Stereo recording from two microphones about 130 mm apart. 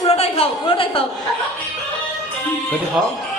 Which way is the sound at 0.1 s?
50° left (ahead or behind).